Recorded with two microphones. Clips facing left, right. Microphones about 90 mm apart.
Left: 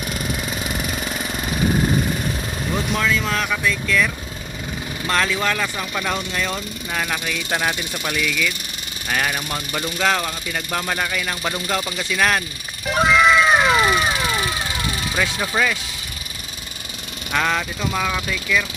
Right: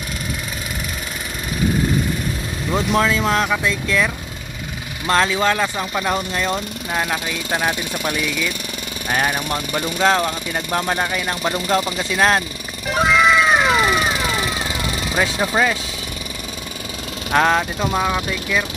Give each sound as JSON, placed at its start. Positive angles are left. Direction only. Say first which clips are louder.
{"t": 2.7, "sound": "speech", "louder": "right 4 dB", "side_deg": -30}
{"t": 10.0, "sound": "speech", "louder": "right 4 dB", "side_deg": -25}
{"t": 12.9, "sound": "cat", "louder": "even", "side_deg": 0}
{"t": 15.1, "sound": "speech", "louder": "right 4 dB", "side_deg": -25}
{"t": 17.3, "sound": "speech", "louder": "right 5 dB", "side_deg": -35}